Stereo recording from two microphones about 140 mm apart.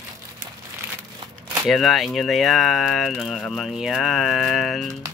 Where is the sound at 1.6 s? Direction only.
Centre (ahead or behind).